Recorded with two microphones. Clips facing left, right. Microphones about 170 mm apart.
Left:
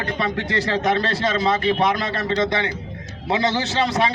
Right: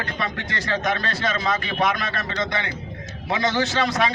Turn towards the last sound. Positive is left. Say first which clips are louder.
# left 1 dB
turn(degrees=30)  # may be behind; listen again after turning